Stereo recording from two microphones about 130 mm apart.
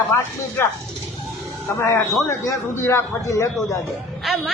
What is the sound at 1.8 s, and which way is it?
A man's voice, 20° left (ahead or behind).